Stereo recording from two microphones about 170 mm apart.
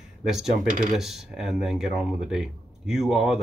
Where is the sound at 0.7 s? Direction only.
50° right (ahead or behind).